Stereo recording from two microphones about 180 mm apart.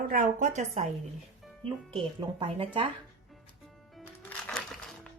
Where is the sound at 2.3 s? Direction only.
30° right (ahead or behind).